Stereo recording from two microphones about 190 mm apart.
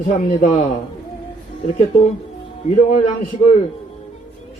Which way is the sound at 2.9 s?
40° left (ahead or behind).